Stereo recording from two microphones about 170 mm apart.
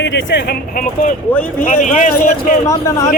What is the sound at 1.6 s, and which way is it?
Speech, 45° left (ahead or behind).